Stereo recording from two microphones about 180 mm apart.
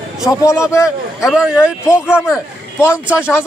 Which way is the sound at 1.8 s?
15° left (ahead or behind).